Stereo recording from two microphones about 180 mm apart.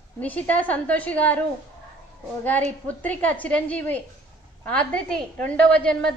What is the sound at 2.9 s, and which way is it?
A woman's voice, 10° left (ahead or behind).